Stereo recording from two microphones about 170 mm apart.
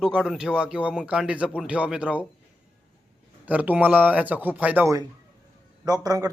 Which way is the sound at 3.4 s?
10° right (ahead or behind).